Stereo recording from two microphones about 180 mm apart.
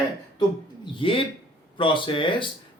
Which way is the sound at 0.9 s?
30° left (ahead or behind).